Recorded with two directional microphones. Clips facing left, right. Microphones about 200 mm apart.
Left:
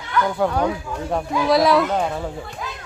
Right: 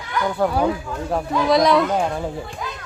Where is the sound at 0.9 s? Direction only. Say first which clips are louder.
Right 1 dB; 5° left (ahead or behind).